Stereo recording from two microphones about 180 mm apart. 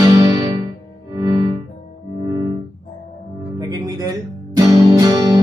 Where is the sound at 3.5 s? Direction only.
20° right (ahead or behind).